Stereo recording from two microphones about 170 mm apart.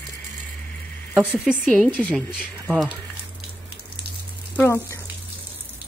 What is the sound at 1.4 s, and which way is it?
Speech, 5° left (ahead or behind).